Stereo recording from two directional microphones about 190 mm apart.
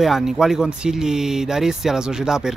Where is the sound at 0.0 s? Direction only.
Centre (ahead or behind).